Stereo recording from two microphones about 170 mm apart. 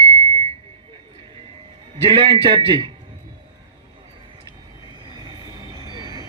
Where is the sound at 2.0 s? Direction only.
30° right (ahead or behind).